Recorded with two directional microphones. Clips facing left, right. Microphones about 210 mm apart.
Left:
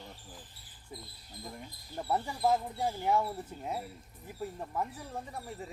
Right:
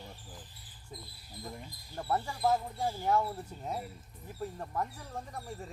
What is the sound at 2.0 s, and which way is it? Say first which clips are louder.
Speech: left 1 dB; 10° left (ahead or behind).